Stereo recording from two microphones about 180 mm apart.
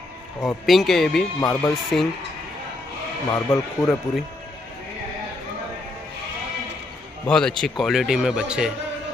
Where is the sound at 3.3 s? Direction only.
15° left (ahead or behind).